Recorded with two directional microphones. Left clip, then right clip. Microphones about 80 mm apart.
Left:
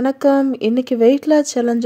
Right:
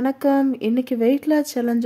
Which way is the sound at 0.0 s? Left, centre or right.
Left.